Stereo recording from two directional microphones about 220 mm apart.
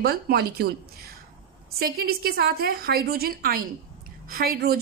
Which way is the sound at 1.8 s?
45° right (ahead or behind).